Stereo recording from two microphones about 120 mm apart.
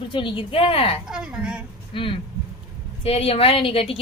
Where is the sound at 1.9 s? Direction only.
50° left (ahead or behind).